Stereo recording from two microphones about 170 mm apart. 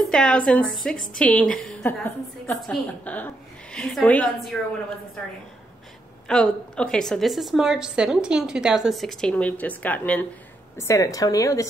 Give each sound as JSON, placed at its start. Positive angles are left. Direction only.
{"t": 0.1, "sound": "a woman's voice", "side_deg": 5}
{"t": 6.2, "sound": "a woman's voice", "side_deg": 5}